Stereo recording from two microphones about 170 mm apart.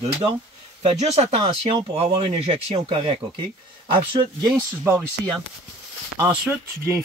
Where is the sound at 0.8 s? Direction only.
40° right (ahead or behind).